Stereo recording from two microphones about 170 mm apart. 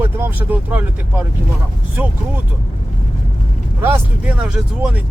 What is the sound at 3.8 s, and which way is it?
Speech, 10° right (ahead or behind).